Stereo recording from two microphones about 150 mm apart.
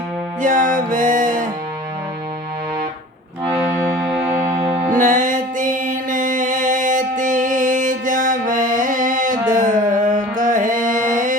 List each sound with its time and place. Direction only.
0.4 s music: 60° right (ahead or behind)
3.6 s accordion: centre (ahead or behind)
4.9 s music: 60° right (ahead or behind)
9.5 s carnatic music: 60° right (ahead or behind)